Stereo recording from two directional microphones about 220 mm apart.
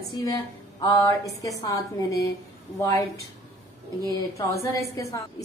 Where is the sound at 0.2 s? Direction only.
15° left (ahead or behind).